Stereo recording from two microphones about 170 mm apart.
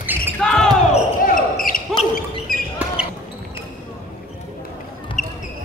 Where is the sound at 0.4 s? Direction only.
5° left (ahead or behind).